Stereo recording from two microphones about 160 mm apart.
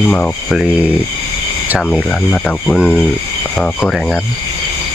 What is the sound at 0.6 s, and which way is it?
Speech, 10° right (ahead or behind).